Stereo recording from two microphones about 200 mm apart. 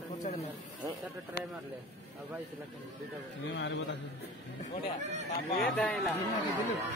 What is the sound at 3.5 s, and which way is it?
Speech, 60° left (ahead or behind).